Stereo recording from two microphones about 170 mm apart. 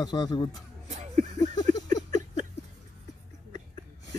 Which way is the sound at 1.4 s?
25° left (ahead or behind).